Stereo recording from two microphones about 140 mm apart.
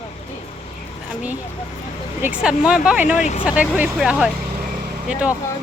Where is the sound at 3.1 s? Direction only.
60° left (ahead or behind).